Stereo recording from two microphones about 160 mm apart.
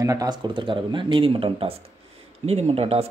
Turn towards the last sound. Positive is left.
turn(degrees=-40)  # may be behind; listen again after turning